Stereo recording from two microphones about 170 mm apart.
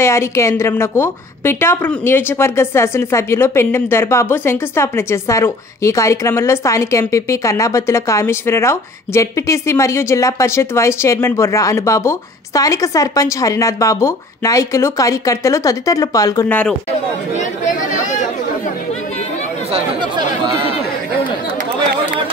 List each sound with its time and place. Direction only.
0.0 s a woman's voice: 15° left (ahead or behind)
16.4 s a woman's voice: 10° left (ahead or behind)
17.4 s chatter: 45° left (ahead or behind)